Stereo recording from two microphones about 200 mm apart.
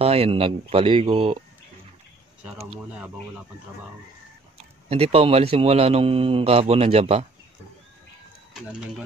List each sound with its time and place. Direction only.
0.0 s speech: 30° right (ahead or behind)
4.8 s a man's voice: 30° right (ahead or behind)